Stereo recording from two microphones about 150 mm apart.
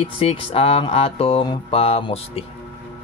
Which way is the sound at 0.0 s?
40° left (ahead or behind).